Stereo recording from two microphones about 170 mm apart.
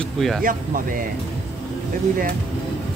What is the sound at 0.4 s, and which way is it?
Speech, 55° right (ahead or behind).